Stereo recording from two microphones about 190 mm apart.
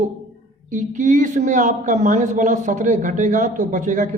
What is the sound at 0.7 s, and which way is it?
A woman's voice, 40° right (ahead or behind).